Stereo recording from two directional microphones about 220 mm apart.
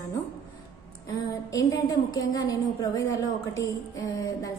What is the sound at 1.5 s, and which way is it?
A woman's voice, 15° left (ahead or behind).